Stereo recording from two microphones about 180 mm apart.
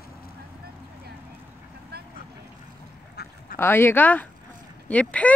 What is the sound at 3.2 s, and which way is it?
Duck, 65° left (ahead or behind).